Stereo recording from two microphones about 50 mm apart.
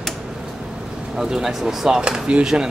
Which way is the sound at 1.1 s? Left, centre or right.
Centre.